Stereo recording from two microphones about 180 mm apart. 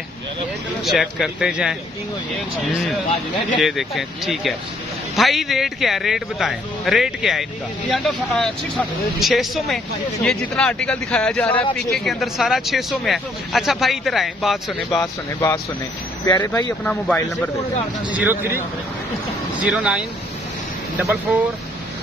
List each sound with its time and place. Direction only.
0.8 s speech: centre (ahead or behind)
16.3 s speech: 20° left (ahead or behind)
16.8 s speech: 10° left (ahead or behind)
18.1 s speech: 10° right (ahead or behind)
21.0 s speech: 10° right (ahead or behind)